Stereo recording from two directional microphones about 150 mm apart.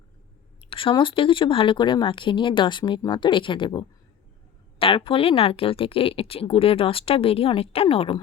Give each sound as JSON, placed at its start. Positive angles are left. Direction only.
{"t": 0.7, "sound": "speech", "side_deg": 35}